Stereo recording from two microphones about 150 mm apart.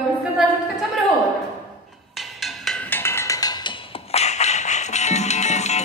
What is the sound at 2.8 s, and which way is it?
Music, 15° left (ahead or behind).